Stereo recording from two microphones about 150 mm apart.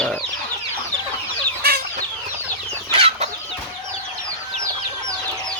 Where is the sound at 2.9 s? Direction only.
40° right (ahead or behind).